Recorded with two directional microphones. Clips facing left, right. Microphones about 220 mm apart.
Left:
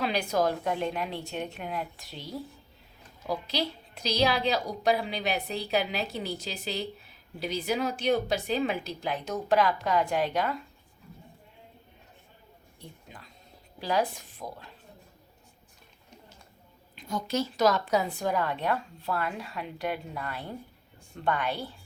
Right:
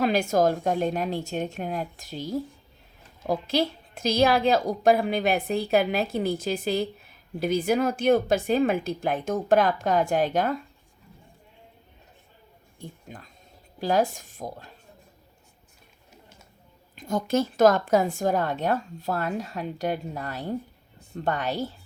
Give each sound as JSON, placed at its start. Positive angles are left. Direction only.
{"t": 0.0, "sound": "a woman's voice", "side_deg": -45}
{"t": 12.8, "sound": "a woman's voice", "side_deg": -45}
{"t": 16.9, "sound": "a woman's voice", "side_deg": -45}